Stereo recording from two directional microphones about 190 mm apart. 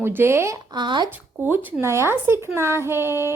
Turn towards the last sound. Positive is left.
turn(degrees=-15)  # may be behind; listen again after turning